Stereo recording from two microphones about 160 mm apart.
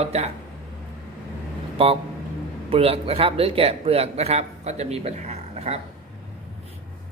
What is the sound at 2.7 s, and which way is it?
Speech, 35° right (ahead or behind).